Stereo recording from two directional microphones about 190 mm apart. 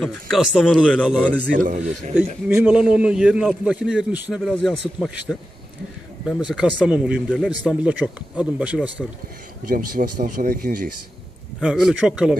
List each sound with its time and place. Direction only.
0.0 s a man's voice: centre (ahead or behind)
1.6 s a man's voice: 40° right (ahead or behind)
2.4 s a man's voice: 5° right (ahead or behind)
9.7 s speech: 45° right (ahead or behind)
11.6 s a man's voice: 5° right (ahead or behind)